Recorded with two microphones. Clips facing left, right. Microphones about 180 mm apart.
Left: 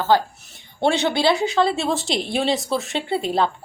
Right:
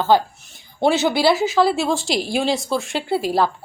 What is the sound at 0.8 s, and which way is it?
Speech, 5° right (ahead or behind).